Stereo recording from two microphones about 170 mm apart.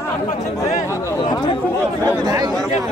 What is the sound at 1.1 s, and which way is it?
Speech, 25° left (ahead or behind).